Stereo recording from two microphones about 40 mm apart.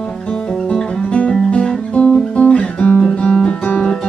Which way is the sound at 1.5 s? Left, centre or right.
Left.